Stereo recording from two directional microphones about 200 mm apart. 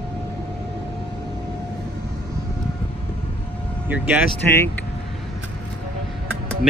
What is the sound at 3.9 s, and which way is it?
Speech, 10° right (ahead or behind).